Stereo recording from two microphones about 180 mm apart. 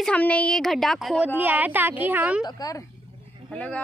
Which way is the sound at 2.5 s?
20° left (ahead or behind).